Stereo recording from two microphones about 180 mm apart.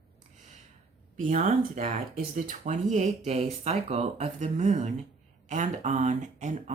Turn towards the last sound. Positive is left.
turn(degrees=-40)  # may be behind; listen again after turning